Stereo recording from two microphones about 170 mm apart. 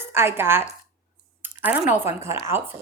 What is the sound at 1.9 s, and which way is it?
Speech, 15° right (ahead or behind).